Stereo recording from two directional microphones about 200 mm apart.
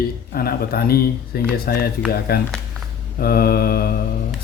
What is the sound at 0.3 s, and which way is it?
Speech, 50° left (ahead or behind).